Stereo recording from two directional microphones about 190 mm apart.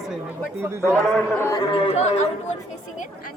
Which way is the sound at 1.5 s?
25° left (ahead or behind).